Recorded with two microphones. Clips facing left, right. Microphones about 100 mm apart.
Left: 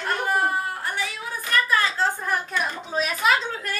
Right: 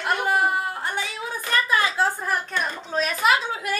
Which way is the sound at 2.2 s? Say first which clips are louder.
Even; centre (ahead or behind).